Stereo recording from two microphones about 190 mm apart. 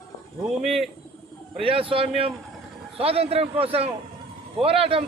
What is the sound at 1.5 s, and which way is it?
A man's voice, 30° right (ahead or behind).